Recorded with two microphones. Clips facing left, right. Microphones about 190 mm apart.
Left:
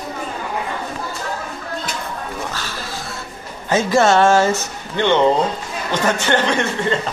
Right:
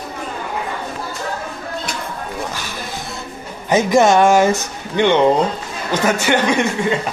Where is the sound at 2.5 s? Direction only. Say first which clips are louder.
Right 1 dB; 15° right (ahead or behind).